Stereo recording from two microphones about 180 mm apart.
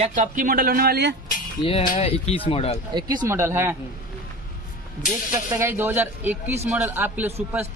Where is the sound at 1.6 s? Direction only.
35° left (ahead or behind).